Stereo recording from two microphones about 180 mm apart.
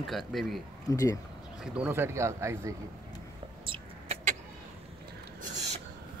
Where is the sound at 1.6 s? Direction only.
5° right (ahead or behind).